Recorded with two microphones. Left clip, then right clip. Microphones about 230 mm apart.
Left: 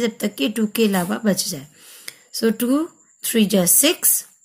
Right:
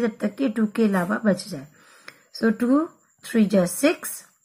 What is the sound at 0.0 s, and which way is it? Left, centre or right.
A woman's voice, left.